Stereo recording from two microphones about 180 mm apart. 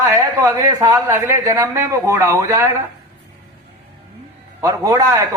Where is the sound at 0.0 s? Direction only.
15° right (ahead or behind).